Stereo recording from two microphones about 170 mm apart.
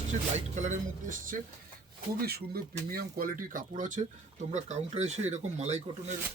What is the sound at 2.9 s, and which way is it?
Speech, 60° right (ahead or behind).